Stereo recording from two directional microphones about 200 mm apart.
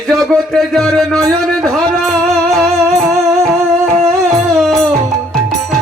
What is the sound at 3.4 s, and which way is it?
Music, 15° right (ahead or behind).